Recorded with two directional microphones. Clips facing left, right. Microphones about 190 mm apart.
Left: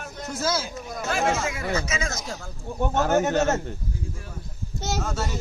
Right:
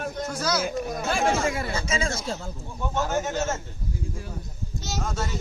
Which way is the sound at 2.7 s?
60° left (ahead or behind).